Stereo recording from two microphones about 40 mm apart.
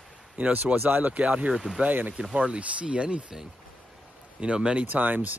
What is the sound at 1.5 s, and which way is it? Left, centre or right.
Speech, centre.